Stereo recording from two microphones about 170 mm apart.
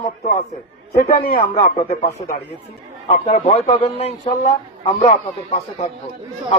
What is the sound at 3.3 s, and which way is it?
A man's voice, 40° left (ahead or behind).